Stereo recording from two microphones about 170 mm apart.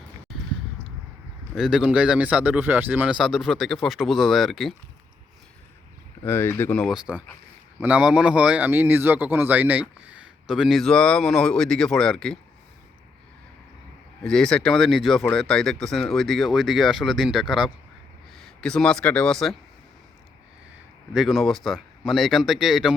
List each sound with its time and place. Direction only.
1.5 s a man's voice: 5° right (ahead or behind)
6.2 s speech: 15° left (ahead or behind)
6.9 s a man's voice: 5° right (ahead or behind)
14.3 s a man's voice: 5° left (ahead or behind)
21.1 s a man's voice: centre (ahead or behind)